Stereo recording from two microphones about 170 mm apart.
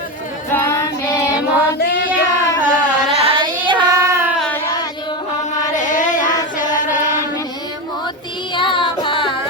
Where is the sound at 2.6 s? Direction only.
50° left (ahead or behind).